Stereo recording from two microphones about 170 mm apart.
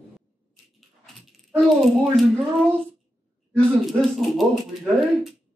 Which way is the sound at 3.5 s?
Centre (ahead or behind).